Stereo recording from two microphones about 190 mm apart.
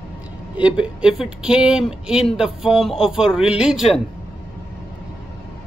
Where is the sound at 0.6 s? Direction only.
5° right (ahead or behind).